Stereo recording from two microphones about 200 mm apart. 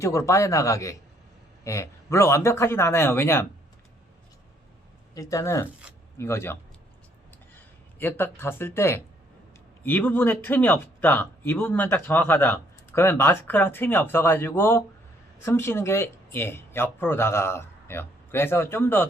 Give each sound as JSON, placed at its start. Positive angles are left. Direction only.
{"t": 0.0, "sound": "speech", "side_deg": 15}
{"t": 5.1, "sound": "speech", "side_deg": 15}